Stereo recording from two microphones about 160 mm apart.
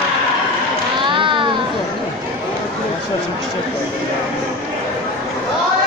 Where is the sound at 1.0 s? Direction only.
30° right (ahead or behind).